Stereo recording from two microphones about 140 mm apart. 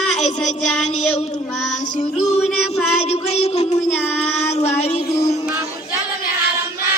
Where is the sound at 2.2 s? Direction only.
50° left (ahead or behind).